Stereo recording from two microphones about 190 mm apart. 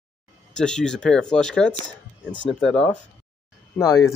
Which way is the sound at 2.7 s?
5° left (ahead or behind).